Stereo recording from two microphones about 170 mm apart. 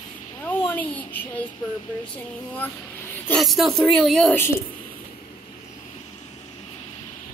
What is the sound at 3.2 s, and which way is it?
A woman's voice, 5° left (ahead or behind).